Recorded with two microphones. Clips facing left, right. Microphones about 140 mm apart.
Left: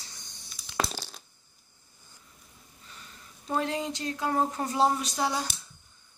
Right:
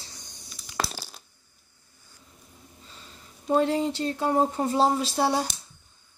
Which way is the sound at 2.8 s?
25° right (ahead or behind).